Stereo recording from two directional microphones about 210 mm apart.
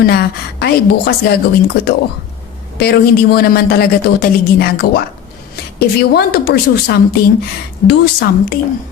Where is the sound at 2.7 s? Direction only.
50° left (ahead or behind).